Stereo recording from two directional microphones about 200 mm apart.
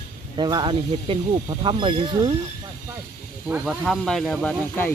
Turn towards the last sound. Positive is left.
turn(degrees=5)  # may be behind; listen again after turning